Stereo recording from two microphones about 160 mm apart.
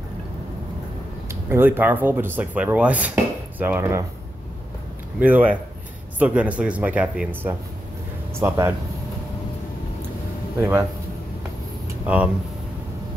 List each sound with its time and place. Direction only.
1.3 s speech: 15° right (ahead or behind)
5.2 s speech: 10° right (ahead or behind)
10.6 s speech: 15° right (ahead or behind)
12.1 s speech: 10° right (ahead or behind)